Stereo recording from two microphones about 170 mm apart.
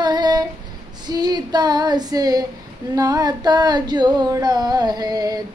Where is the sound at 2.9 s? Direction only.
20° right (ahead or behind).